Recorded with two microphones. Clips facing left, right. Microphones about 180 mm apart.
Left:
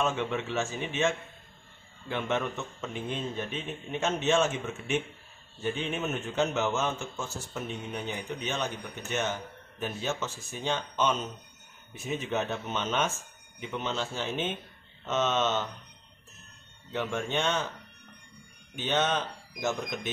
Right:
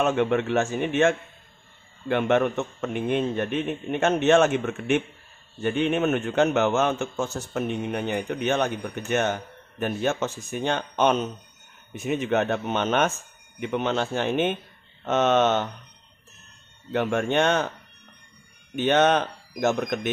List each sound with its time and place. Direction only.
0.0 s a man's voice: 60° right (ahead or behind)
16.9 s a man's voice: 60° right (ahead or behind)
18.8 s a man's voice: 60° right (ahead or behind)